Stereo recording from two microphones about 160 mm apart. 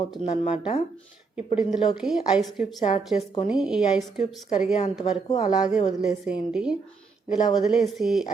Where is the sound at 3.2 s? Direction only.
40° left (ahead or behind).